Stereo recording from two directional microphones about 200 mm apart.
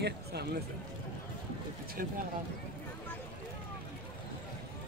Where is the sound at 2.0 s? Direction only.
45° right (ahead or behind).